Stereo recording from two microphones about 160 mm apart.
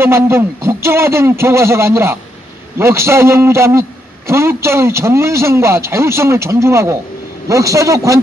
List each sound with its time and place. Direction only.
0.0 s a man's voice: 15° right (ahead or behind)